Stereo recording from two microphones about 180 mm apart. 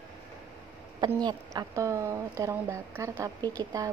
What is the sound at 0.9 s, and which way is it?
Speech, 25° right (ahead or behind).